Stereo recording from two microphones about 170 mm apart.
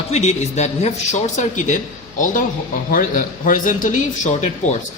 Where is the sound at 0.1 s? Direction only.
40° left (ahead or behind).